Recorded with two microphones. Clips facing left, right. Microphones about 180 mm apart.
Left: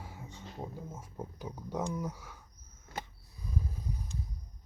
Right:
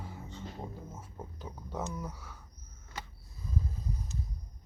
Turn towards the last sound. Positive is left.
turn(degrees=15)  # may be behind; listen again after turning